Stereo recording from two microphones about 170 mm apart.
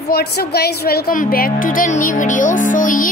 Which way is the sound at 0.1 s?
70° left (ahead or behind).